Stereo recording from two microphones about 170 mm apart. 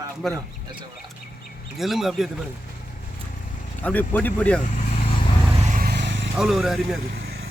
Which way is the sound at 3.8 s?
10° left (ahead or behind).